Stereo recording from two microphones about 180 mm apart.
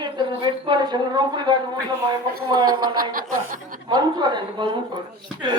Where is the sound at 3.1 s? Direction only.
50° right (ahead or behind).